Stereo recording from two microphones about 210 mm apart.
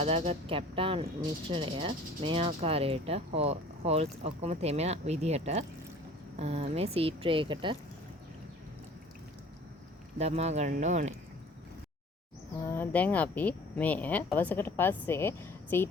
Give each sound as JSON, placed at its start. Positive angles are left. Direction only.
{"t": 0.0, "sound": "speech", "side_deg": -30}
{"t": 10.2, "sound": "speech", "side_deg": -30}
{"t": 12.6, "sound": "a woman's voice", "side_deg": 10}